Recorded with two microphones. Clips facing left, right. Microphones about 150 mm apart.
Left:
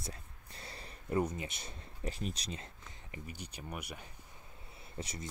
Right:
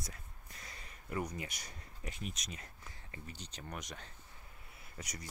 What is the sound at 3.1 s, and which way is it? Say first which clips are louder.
Speech: left 4 dB; 15° left (ahead or behind).